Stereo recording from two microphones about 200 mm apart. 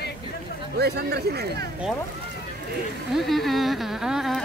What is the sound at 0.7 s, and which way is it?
Speech, 55° right (ahead or behind).